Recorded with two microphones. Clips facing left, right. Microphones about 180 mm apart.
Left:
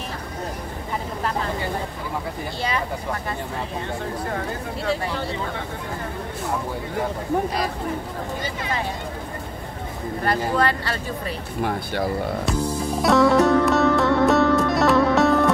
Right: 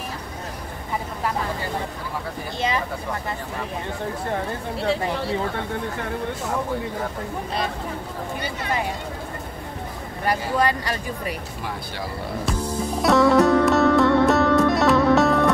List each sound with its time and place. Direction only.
10.2 s speech: 15° right (ahead or behind)
11.6 s speech: 55° left (ahead or behind)
13.0 s music: centre (ahead or behind)